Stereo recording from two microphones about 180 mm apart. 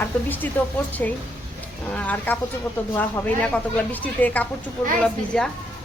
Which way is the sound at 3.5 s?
10° left (ahead or behind).